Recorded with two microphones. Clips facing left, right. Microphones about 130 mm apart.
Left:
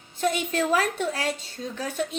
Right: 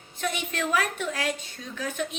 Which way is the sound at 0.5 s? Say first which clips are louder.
Left 4 dB; 35° left (ahead or behind).